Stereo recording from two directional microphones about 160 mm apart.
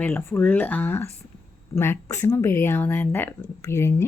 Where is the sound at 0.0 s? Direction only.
10° left (ahead or behind).